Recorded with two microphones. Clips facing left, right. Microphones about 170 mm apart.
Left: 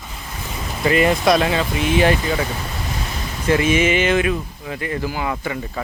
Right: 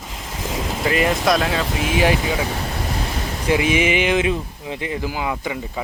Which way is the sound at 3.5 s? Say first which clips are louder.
Left 2 dB; 15° right (ahead or behind).